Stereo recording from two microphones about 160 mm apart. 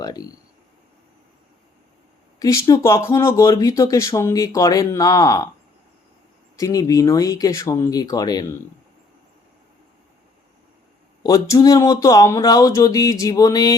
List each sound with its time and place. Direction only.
0.0 s speech: 25° left (ahead or behind)
2.4 s speech: 20° left (ahead or behind)
6.6 s speech: 20° left (ahead or behind)
11.2 s speech: 20° left (ahead or behind)